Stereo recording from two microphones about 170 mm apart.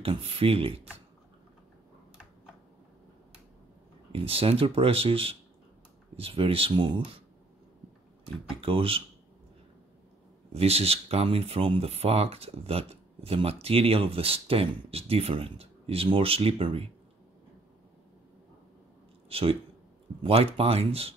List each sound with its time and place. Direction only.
0.0 s speech: 35° right (ahead or behind)
4.1 s speech: 35° right (ahead or behind)
8.5 s speech: 35° right (ahead or behind)
10.5 s speech: 35° right (ahead or behind)
19.2 s a sound: 35° right (ahead or behind)
20.2 s speech: 35° right (ahead or behind)